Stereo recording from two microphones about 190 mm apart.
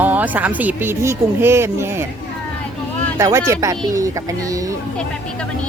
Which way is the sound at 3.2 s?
15° right (ahead or behind).